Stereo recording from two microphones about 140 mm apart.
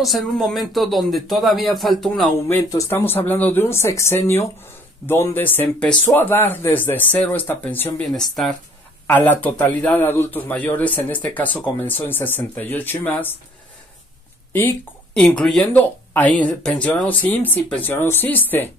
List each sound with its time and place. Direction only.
0.0 s a man's voice: centre (ahead or behind)
2.3 s a man's voice: 20° left (ahead or behind)
8.1 s a man's voice: centre (ahead or behind)
9.0 s a man's voice: 10° left (ahead or behind)
14.5 s speech: 15° left (ahead or behind)
15.2 s a man's voice: 5° left (ahead or behind)